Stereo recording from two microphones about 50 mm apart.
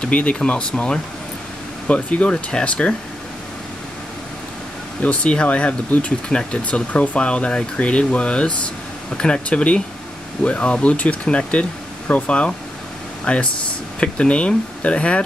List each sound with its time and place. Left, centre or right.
0.0 s speech: left
5.0 s speech: left